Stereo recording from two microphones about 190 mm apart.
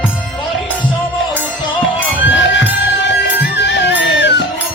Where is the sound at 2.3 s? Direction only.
75° left (ahead or behind).